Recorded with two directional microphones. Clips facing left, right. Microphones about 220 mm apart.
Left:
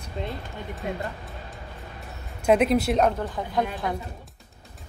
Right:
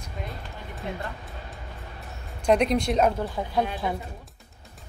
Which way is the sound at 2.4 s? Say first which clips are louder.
Left 2 dB; 5° left (ahead or behind).